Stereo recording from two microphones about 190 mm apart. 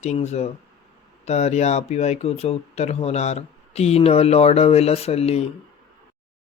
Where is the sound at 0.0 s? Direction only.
35° left (ahead or behind).